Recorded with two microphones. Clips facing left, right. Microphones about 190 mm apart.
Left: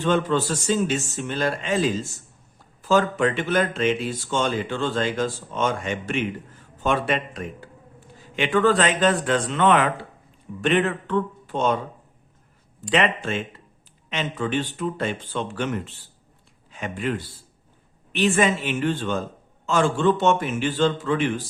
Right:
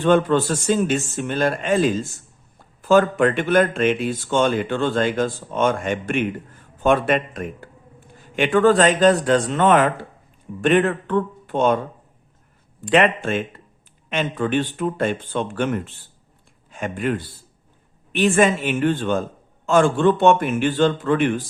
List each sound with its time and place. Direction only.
0.0 s speech: 55° right (ahead or behind)
12.8 s speech: 50° right (ahead or behind)